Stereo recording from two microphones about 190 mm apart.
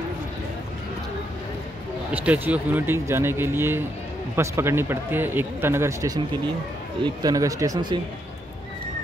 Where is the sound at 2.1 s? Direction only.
10° right (ahead or behind).